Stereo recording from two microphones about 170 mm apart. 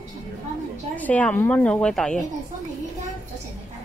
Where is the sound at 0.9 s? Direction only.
10° left (ahead or behind).